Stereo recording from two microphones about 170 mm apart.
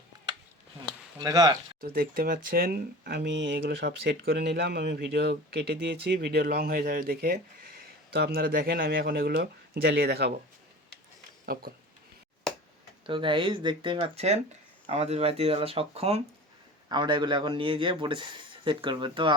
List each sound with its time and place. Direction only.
1.2 s a man's voice: 20° right (ahead or behind)
1.8 s speech: 60° right (ahead or behind)
13.1 s a man's voice: 30° right (ahead or behind)
16.9 s a man's voice: 25° right (ahead or behind)